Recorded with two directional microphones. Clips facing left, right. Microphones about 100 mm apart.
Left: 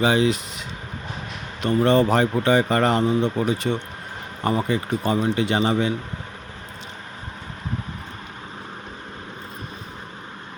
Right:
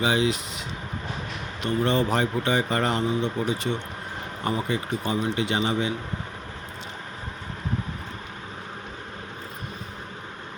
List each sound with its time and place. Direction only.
0.0 s a man's voice: 45° left (ahead or behind)
1.6 s speech: 50° left (ahead or behind); by 3.5 s 65° left (ahead or behind)
4.4 s a man's voice: 45° left (ahead or behind)